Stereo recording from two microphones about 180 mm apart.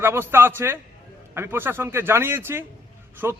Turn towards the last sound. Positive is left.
turn(degrees=-15)  # may be behind; listen again after turning